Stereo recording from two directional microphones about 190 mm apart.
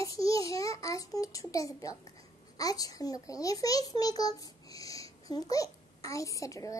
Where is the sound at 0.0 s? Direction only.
15° left (ahead or behind).